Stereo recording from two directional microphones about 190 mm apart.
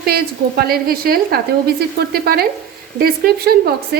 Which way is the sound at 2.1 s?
55° right (ahead or behind).